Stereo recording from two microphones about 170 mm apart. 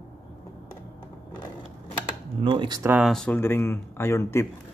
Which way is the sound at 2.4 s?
30° right (ahead or behind).